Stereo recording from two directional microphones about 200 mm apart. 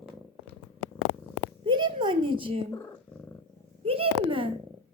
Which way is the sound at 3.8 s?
30° right (ahead or behind).